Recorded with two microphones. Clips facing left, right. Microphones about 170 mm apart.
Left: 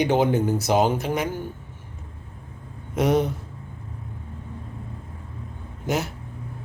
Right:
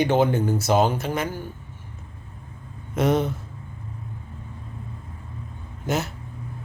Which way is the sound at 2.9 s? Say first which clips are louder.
Left 1 dB; 10° left (ahead or behind).